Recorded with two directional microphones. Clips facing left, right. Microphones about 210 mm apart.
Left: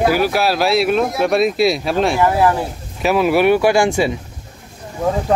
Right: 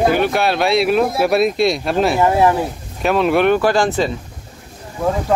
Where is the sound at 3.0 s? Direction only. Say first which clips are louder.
Even; 5° left (ahead or behind).